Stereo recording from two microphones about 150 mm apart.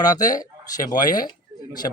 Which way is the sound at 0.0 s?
25° left (ahead or behind).